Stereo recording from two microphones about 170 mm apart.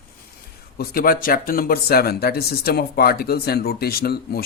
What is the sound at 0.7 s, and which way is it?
Speech, 60° left (ahead or behind).